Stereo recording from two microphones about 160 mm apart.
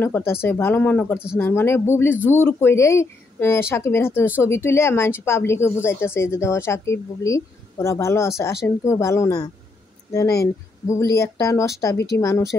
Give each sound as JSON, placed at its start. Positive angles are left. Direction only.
{"t": 0.0, "sound": "a woman's voice", "side_deg": 15}
{"t": 11.0, "sound": "a woman's voice", "side_deg": 20}